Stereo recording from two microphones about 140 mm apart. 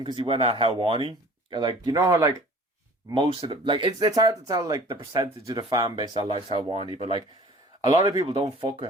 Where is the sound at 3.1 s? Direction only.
35° right (ahead or behind).